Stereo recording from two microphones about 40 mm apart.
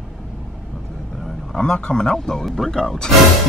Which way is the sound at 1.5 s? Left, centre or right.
Left.